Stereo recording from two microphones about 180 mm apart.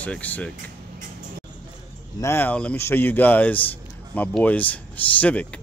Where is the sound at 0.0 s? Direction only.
10° left (ahead or behind).